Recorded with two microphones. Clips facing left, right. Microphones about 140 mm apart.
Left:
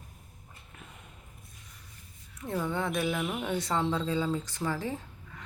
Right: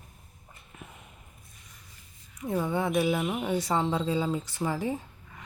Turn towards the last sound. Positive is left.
turn(degrees=-15)  # may be behind; listen again after turning